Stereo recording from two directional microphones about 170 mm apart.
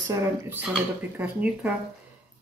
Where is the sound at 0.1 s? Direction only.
10° right (ahead or behind).